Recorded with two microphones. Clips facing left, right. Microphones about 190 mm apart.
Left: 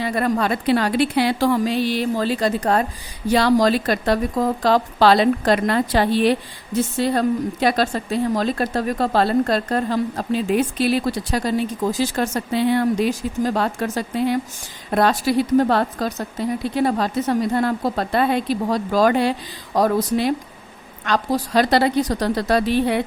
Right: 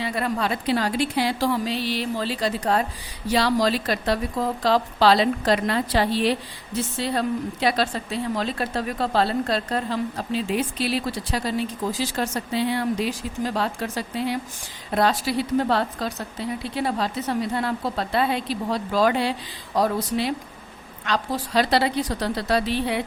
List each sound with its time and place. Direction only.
0.0 s a woman's voice: 50° left (ahead or behind)